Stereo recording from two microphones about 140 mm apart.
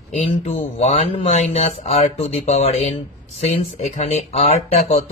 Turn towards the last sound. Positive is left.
turn(degrees=45)  # may be behind; listen again after turning